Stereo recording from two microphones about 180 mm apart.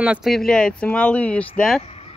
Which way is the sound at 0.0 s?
5° right (ahead or behind).